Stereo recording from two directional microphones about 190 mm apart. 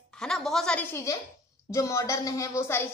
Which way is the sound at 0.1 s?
5° left (ahead or behind).